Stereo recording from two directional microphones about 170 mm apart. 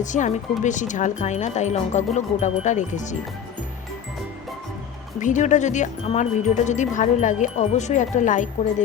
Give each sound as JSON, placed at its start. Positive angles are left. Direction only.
{"t": 0.0, "sound": "speech", "side_deg": 45}
{"t": 5.2, "sound": "speech", "side_deg": 45}